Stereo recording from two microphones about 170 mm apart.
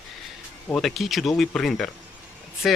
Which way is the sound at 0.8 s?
Centre (ahead or behind).